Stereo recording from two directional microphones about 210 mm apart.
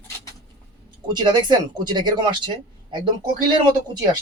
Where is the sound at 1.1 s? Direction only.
20° right (ahead or behind).